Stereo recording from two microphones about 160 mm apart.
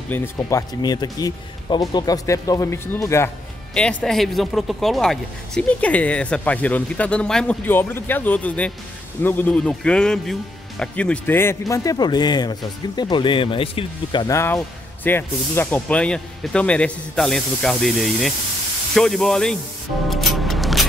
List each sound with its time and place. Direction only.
0.1 s speech: 15° left (ahead or behind)
3.7 s speech: 5° left (ahead or behind); by 14.3 s 30° left (ahead or behind)
14.3 s speech: 15° left (ahead or behind)
20.1 s music: centre (ahead or behind)